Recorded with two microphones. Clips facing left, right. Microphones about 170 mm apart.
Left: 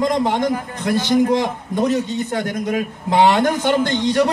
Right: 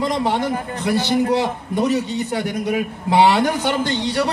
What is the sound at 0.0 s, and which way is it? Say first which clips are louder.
Speech: left 2 dB; 15° left (ahead or behind).